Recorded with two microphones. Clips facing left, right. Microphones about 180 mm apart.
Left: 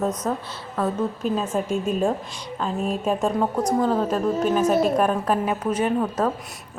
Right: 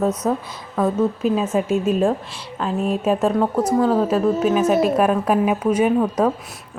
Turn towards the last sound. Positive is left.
turn(degrees=-10)  # may be behind; listen again after turning